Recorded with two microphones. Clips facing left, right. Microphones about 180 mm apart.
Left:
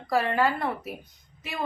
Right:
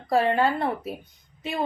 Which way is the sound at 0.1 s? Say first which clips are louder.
Right 3 dB; 25° right (ahead or behind).